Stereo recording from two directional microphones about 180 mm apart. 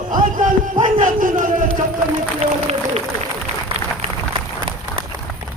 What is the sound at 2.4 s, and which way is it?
Applause, 35° right (ahead or behind).